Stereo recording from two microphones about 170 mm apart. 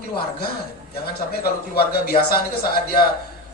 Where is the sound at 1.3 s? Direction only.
65° left (ahead or behind).